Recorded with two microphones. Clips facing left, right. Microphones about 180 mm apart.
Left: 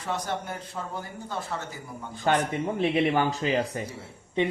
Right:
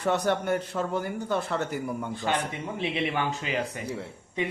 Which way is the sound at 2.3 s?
45° left (ahead or behind).